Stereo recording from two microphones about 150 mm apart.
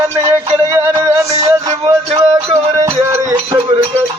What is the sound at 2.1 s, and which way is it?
Music, 20° right (ahead or behind).